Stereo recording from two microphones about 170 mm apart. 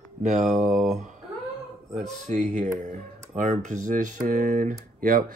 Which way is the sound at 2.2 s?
45° right (ahead or behind).